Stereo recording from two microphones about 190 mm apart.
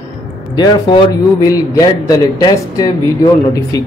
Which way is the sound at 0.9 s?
25° left (ahead or behind).